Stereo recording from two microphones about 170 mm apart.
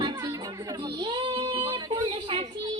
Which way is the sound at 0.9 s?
25° right (ahead or behind).